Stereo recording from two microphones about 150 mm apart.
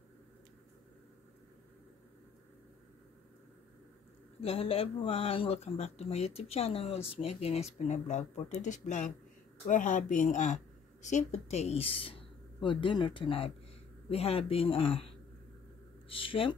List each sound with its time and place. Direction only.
4.4 s speech: 40° left (ahead or behind)
16.1 s speech: 35° left (ahead or behind)